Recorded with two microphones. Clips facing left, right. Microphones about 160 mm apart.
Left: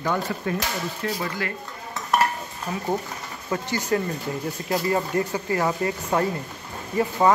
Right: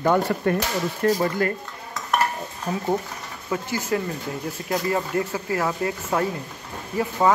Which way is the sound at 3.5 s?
Centre (ahead or behind).